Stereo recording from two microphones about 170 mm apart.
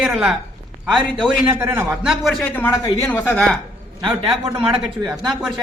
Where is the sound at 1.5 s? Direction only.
10° right (ahead or behind); by 3.6 s 5° left (ahead or behind).